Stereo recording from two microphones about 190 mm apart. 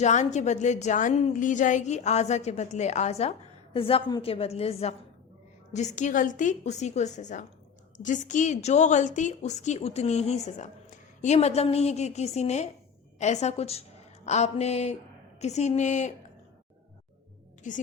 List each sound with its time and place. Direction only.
0.0 s a woman's voice: 40° left (ahead or behind)
17.7 s a woman's voice: 40° left (ahead or behind)